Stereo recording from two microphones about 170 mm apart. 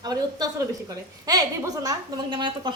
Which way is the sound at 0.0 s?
25° right (ahead or behind).